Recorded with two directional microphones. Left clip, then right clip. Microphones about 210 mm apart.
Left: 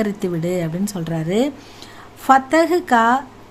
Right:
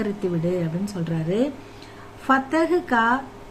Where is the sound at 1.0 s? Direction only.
50° left (ahead or behind).